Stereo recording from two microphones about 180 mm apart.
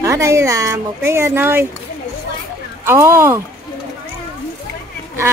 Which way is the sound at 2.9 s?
15° right (ahead or behind).